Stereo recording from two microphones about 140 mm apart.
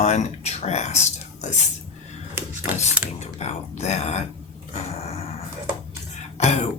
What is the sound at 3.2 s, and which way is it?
Speech, 55° left (ahead or behind).